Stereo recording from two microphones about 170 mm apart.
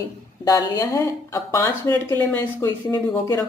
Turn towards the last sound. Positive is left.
turn(degrees=20)  # may be behind; listen again after turning